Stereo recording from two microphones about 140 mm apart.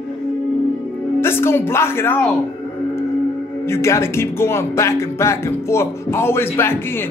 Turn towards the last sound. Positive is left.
turn(degrees=15)  # may be behind; listen again after turning